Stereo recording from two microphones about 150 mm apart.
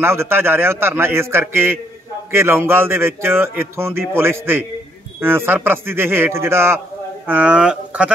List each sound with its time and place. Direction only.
0.0 s speech: 15° right (ahead or behind)